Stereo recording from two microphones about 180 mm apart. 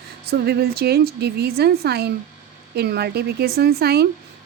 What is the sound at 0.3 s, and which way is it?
Speech, 60° right (ahead or behind).